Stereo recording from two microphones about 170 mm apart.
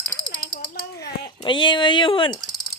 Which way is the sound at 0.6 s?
60° left (ahead or behind).